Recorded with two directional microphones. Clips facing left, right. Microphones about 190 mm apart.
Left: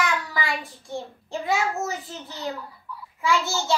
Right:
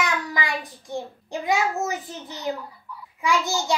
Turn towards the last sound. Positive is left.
turn(degrees=-15)  # may be behind; listen again after turning